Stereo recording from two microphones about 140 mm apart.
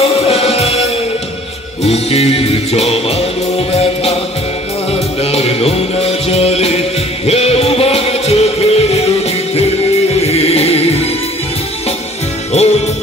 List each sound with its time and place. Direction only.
0.0 s music: 45° left (ahead or behind)
10.1 s music: 45° left (ahead or behind)
12.5 s music: 50° left (ahead or behind)